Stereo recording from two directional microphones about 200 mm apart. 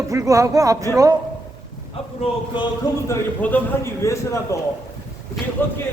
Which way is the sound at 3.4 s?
10° left (ahead or behind).